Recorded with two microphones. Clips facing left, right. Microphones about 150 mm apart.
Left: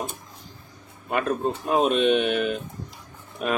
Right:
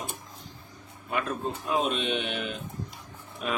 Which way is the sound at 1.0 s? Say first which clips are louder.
Left 6 dB; 60° left (ahead or behind).